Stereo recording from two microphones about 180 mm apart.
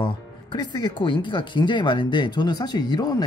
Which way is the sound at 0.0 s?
25° left (ahead or behind).